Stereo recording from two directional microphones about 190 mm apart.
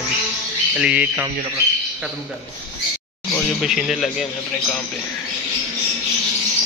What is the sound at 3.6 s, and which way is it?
Speech, centre (ahead or behind).